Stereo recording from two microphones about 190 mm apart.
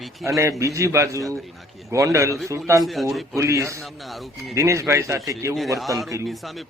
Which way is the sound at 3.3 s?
15° right (ahead or behind).